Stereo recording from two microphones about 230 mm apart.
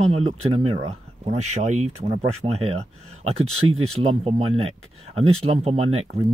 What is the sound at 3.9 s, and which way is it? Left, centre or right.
Speech, right.